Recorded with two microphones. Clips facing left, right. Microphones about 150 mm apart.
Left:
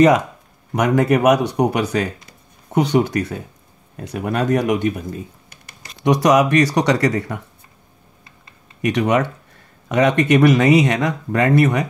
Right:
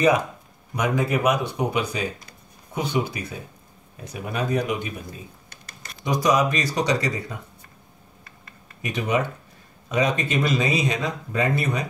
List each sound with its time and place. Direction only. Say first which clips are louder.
0.7 s speech: left 7 dB; 75° left (ahead or behind)
6.0 s speech: left 6 dB; 75° left (ahead or behind)
8.8 s speech: left 7 dB; 75° left (ahead or behind)